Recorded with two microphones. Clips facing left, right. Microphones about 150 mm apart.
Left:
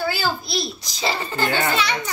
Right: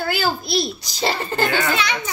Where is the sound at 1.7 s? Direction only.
Centre (ahead or behind).